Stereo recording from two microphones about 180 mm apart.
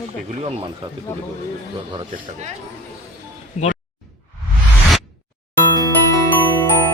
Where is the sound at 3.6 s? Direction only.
40° left (ahead or behind).